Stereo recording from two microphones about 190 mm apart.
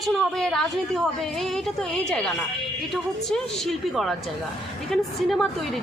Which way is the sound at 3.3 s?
Centre (ahead or behind).